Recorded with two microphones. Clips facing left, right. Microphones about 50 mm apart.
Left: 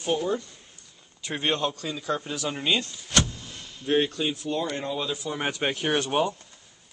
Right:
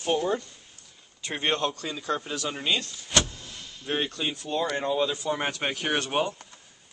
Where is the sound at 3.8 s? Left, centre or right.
Centre.